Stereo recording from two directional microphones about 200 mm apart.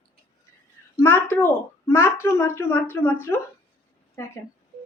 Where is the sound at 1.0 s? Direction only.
10° left (ahead or behind).